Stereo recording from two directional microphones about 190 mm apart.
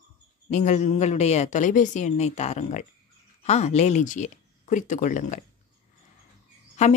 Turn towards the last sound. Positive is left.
turn(degrees=35)  # may be behind; listen again after turning